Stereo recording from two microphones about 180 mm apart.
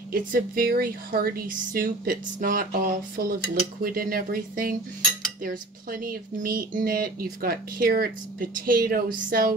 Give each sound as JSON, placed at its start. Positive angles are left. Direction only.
{"t": 0.1, "sound": "speech", "side_deg": -50}